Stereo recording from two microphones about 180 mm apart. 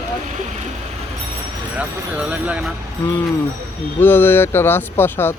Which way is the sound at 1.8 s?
5° right (ahead or behind).